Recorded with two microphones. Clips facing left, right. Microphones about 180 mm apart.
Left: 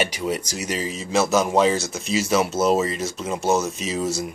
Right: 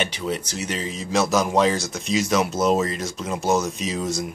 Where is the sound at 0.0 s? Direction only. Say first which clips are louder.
Left 2 dB; 10° left (ahead or behind).